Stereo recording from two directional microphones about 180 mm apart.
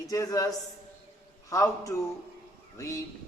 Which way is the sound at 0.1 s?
20° left (ahead or behind).